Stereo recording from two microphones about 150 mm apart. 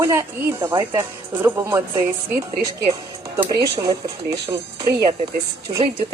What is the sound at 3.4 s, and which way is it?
Speech, 25° right (ahead or behind).